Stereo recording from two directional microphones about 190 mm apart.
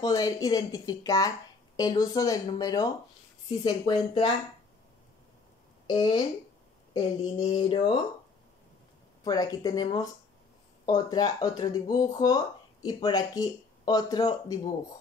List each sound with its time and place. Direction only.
0.0 s speech: 20° left (ahead or behind)
5.9 s speech: 20° left (ahead or behind)
9.2 s speech: 20° left (ahead or behind)